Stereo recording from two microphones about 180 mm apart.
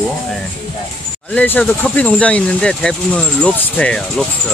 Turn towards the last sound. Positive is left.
turn(degrees=5)  # may be behind; listen again after turning